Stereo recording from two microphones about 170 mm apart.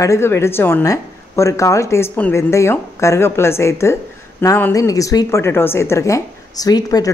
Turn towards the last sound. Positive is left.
turn(degrees=20)  # may be behind; listen again after turning